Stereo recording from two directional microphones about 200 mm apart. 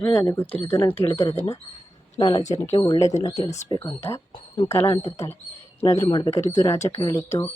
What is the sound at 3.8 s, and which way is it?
Speech, 10° left (ahead or behind).